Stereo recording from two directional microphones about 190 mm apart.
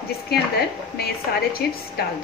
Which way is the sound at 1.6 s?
60° left (ahead or behind).